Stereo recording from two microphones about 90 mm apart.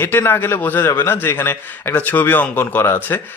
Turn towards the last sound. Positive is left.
turn(degrees=25)  # may be behind; listen again after turning